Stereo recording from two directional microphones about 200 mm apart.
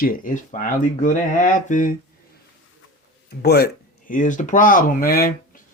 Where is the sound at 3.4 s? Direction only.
50° left (ahead or behind).